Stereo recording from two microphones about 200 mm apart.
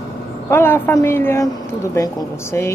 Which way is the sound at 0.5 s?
10° left (ahead or behind).